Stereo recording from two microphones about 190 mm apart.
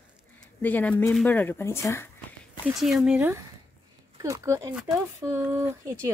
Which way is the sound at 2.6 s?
Centre (ahead or behind).